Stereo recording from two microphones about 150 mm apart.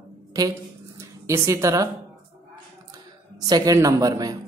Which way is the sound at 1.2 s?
20° right (ahead or behind).